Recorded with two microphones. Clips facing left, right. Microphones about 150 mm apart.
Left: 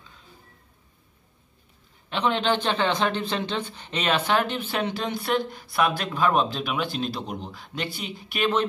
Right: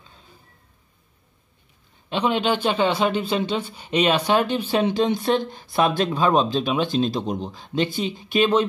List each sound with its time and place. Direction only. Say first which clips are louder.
2.0 s speech: right 2 dB; 15° right (ahead or behind)